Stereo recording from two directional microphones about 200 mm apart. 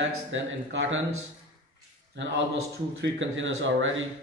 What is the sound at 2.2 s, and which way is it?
Speech, 60° right (ahead or behind).